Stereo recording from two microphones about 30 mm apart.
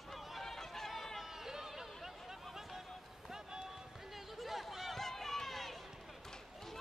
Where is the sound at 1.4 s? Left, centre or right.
Centre.